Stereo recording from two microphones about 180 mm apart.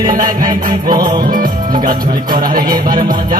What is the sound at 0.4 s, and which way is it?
Music, 20° right (ahead or behind).